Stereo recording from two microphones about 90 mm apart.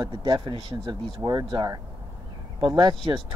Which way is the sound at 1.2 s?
50° right (ahead or behind).